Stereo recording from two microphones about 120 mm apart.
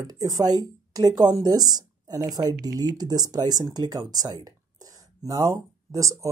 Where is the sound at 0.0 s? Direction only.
30° right (ahead or behind).